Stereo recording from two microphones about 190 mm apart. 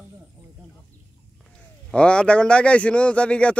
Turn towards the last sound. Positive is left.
turn(degrees=5)  # may be behind; listen again after turning